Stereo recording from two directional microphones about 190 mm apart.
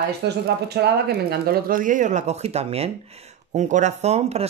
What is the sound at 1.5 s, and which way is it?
Speech, 45° right (ahead or behind).